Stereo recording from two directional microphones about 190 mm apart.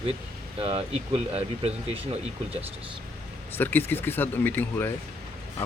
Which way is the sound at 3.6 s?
10° left (ahead or behind).